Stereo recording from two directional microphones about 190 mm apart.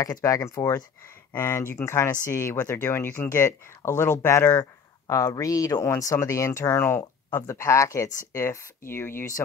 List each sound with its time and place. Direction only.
0.0 s speech: 15° left (ahead or behind)